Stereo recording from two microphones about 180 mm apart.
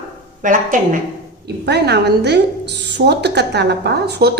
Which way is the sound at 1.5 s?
65° right (ahead or behind).